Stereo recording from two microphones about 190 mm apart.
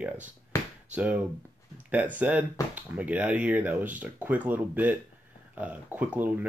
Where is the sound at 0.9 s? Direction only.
5° right (ahead or behind).